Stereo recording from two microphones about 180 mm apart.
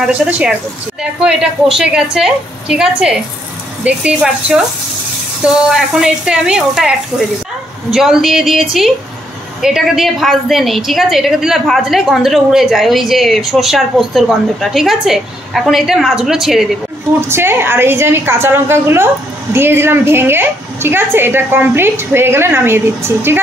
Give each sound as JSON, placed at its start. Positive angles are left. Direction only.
{"t": 0.2, "sound": "a woman's voice", "side_deg": -5}
{"t": 7.9, "sound": "a woman's voice", "side_deg": 0}
{"t": 17.3, "sound": "a woman's voice", "side_deg": -10}